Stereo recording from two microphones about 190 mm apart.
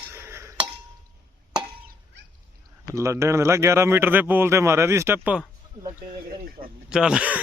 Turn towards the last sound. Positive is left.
turn(degrees=-5)  # may be behind; listen again after turning